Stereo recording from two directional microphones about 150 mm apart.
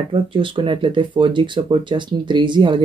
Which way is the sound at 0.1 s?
35° right (ahead or behind).